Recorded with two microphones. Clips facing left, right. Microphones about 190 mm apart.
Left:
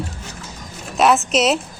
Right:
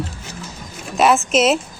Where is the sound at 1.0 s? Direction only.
Centre (ahead or behind).